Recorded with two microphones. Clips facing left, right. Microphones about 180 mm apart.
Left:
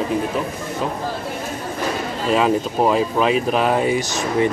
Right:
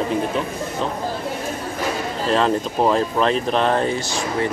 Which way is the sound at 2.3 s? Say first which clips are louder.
Left 2 dB; 5° left (ahead or behind).